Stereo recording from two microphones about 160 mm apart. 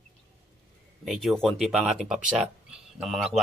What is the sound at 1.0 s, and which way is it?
Speech, centre (ahead or behind).